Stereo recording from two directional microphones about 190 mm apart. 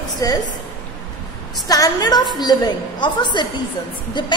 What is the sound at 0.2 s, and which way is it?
Speech, 20° left (ahead or behind).